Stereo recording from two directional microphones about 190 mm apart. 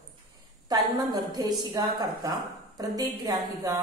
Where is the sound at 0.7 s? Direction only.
20° right (ahead or behind).